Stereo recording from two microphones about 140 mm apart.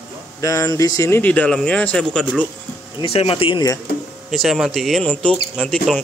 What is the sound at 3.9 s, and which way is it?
Speech, 90° left.